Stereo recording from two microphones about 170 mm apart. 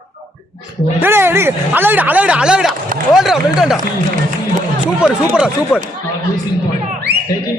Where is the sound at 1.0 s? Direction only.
15° right (ahead or behind).